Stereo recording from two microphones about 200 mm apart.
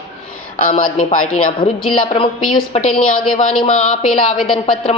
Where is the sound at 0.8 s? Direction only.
40° left (ahead or behind).